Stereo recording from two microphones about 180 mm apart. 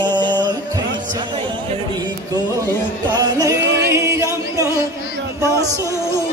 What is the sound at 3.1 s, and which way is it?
Music, 20° right (ahead or behind).